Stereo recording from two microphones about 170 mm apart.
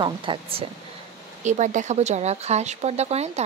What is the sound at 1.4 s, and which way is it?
Speech, 45° right (ahead or behind).